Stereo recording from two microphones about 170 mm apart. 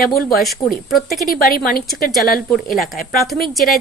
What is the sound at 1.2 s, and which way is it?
Speech, 60° left (ahead or behind).